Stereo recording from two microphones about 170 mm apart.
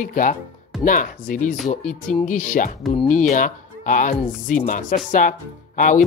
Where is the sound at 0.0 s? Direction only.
50° left (ahead or behind).